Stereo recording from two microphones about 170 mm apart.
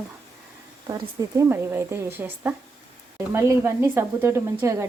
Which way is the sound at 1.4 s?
15° right (ahead or behind).